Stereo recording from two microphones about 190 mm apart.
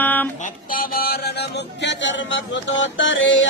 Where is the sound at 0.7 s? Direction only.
50° left (ahead or behind).